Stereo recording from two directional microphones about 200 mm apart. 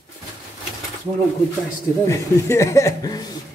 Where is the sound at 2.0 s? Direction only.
15° left (ahead or behind).